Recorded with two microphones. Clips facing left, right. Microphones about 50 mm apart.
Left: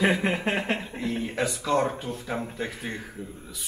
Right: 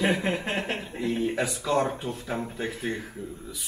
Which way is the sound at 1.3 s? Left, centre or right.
Centre.